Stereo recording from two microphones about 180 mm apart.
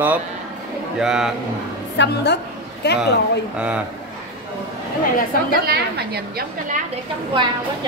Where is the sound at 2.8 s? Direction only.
65° left (ahead or behind).